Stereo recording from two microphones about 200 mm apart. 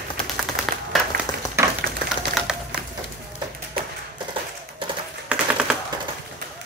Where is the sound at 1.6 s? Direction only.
15° right (ahead or behind).